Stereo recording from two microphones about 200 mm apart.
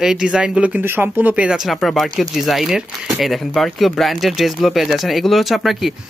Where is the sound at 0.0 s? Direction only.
Centre (ahead or behind).